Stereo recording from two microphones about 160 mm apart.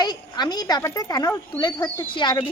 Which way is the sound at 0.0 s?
25° left (ahead or behind).